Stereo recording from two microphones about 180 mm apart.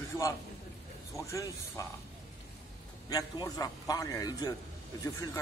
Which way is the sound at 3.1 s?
20° left (ahead or behind).